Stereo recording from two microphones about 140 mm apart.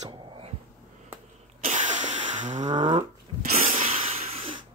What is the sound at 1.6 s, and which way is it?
Sneeze, 60° right (ahead or behind).